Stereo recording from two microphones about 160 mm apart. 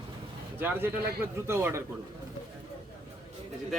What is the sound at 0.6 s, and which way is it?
A man's voice, 15° right (ahead or behind).